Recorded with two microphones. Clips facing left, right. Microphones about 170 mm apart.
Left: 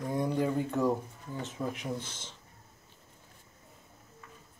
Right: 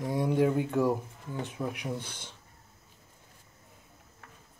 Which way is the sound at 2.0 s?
60° right (ahead or behind).